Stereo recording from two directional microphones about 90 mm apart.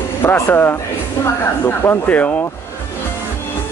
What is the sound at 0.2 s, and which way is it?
Speech, 25° left (ahead or behind).